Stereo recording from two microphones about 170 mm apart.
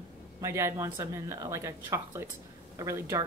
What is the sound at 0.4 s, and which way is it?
Speech, 15° right (ahead or behind).